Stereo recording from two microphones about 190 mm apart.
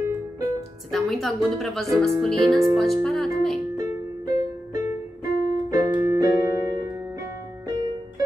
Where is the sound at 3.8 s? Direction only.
20° right (ahead or behind).